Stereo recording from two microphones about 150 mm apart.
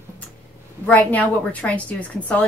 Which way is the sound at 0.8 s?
10° left (ahead or behind).